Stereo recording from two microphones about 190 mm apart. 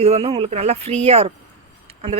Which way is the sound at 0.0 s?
35° right (ahead or behind).